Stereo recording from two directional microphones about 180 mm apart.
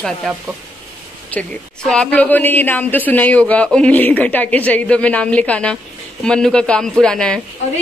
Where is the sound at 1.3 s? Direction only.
5° left (ahead or behind).